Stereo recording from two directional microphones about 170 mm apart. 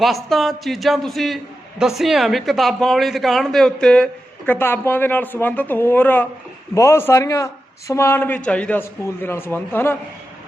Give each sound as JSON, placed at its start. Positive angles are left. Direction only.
{"t": 0.0, "sound": "a man's voice", "side_deg": 0}